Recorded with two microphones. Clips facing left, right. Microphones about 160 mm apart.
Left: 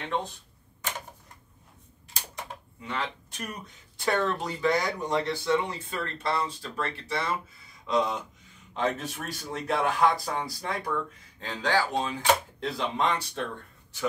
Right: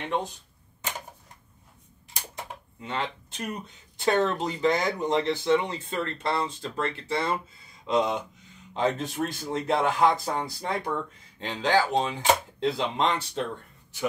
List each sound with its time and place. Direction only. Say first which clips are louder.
2.8 s speech: right 2 dB; 25° right (ahead or behind)